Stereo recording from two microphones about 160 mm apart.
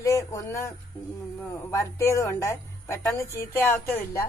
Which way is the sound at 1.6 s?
20° left (ahead or behind).